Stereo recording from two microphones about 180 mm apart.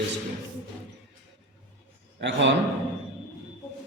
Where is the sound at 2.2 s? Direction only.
85° right.